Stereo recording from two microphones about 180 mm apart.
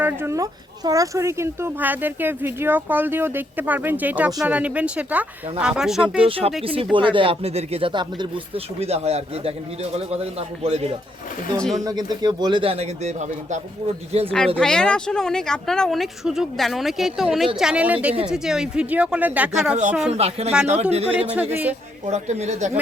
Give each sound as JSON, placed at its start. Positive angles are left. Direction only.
{"t": 0.0, "sound": "speech", "side_deg": -15}
{"t": 6.2, "sound": "speech", "side_deg": -30}
{"t": 11.5, "sound": "speech", "side_deg": 5}
{"t": 11.9, "sound": "speech", "side_deg": -20}
{"t": 14.3, "sound": "speech", "side_deg": 5}
{"t": 20.1, "sound": "speech", "side_deg": -35}
{"t": 21.5, "sound": "speech", "side_deg": -10}
{"t": 22.0, "sound": "speech", "side_deg": -40}